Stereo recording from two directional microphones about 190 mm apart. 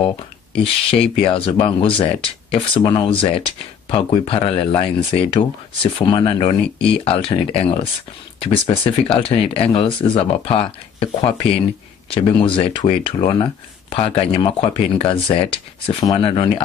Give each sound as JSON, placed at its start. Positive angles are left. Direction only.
{"t": 0.8, "sound": "speech", "side_deg": 30}